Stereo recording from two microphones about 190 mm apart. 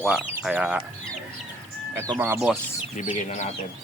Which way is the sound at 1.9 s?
15° right (ahead or behind).